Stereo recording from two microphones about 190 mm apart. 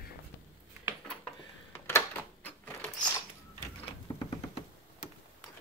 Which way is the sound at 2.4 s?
10° left (ahead or behind).